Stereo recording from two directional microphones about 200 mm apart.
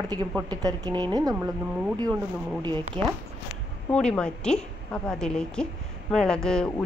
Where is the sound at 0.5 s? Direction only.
20° right (ahead or behind).